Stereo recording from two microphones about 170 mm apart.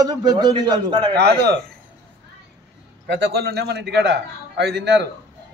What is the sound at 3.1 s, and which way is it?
A man's voice, 85° right.